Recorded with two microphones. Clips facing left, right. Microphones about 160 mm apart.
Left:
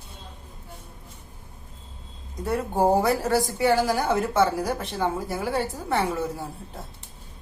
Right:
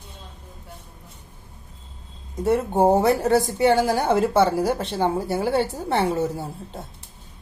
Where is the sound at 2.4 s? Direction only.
25° right (ahead or behind).